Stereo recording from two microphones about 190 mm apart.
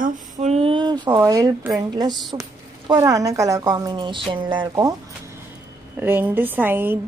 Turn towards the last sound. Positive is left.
turn(degrees=-10)  # may be behind; listen again after turning